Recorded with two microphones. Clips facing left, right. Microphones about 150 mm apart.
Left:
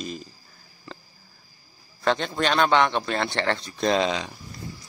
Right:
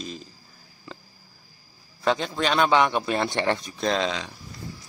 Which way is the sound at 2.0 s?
5° right (ahead or behind).